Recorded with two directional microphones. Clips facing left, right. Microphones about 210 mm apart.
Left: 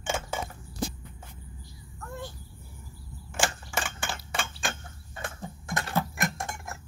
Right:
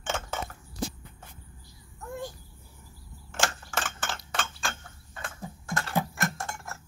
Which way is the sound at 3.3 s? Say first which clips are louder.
Left 1 dB; 10° left (ahead or behind).